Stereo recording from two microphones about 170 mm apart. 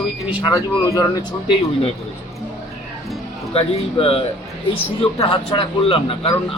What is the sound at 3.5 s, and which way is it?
A man's voice, 35° left (ahead or behind).